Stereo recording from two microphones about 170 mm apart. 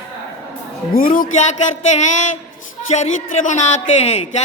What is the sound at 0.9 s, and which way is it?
Speech, 55° left (ahead or behind).